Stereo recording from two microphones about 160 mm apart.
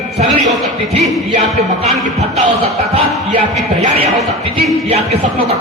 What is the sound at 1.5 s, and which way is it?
Music, 40° right (ahead or behind).